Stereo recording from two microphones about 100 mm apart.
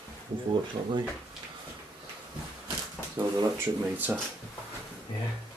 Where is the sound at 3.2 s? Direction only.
50° right (ahead or behind).